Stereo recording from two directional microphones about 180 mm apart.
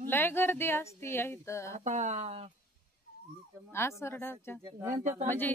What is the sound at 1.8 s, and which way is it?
Speech, 40° right (ahead or behind).